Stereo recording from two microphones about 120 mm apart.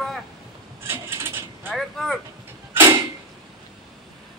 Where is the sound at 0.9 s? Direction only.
20° right (ahead or behind).